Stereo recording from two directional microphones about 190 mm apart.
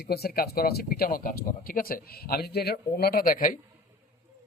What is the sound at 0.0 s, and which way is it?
A man's voice, 55° left (ahead or behind).